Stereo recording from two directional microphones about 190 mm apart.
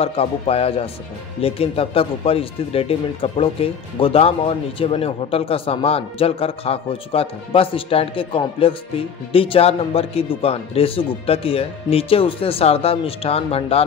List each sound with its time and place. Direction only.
0.0 s speech: 30° left (ahead or behind)